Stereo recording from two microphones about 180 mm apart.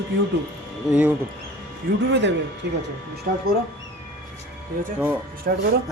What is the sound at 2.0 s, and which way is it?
Speech, 85° right.